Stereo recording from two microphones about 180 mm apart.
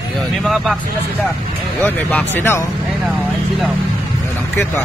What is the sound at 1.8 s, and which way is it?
Speech, 10° left (ahead or behind).